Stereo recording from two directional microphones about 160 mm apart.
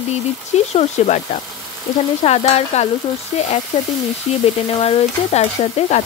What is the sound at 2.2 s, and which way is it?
Stir, 40° left (ahead or behind).